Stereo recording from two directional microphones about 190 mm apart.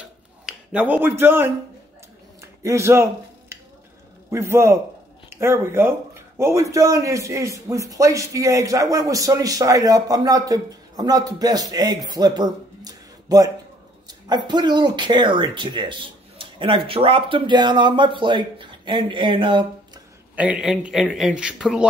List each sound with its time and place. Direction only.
0.0 s a sound: 5° right (ahead or behind)
4.3 s speech: 15° right (ahead or behind)
20.3 s speech: 5° right (ahead or behind)